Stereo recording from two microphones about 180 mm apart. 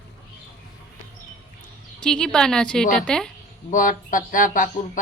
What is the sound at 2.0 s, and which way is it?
A woman's voice, 5° left (ahead or behind).